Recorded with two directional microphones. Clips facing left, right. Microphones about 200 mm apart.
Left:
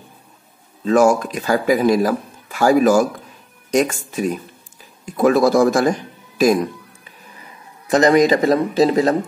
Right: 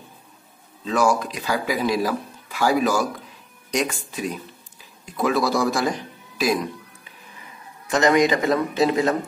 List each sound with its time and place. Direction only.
0.8 s speech: 45° left (ahead or behind)
7.9 s speech: 35° left (ahead or behind)